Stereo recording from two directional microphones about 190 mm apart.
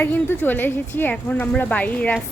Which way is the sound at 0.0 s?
10° left (ahead or behind).